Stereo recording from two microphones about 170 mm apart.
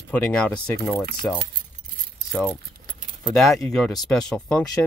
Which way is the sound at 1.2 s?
10° left (ahead or behind).